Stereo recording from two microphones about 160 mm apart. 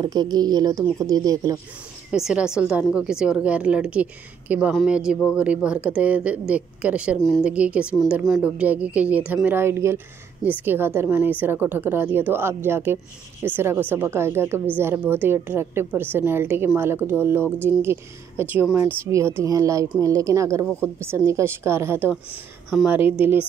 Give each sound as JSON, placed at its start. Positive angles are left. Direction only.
{"t": 0.0, "sound": "speech", "side_deg": -25}
{"t": 2.1, "sound": "speech", "side_deg": -5}